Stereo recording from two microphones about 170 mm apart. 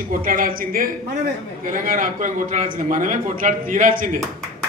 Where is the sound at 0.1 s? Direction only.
55° right (ahead or behind).